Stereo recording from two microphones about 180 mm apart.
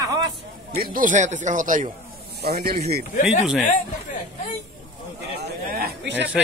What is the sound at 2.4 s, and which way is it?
Speech, 60° right (ahead or behind).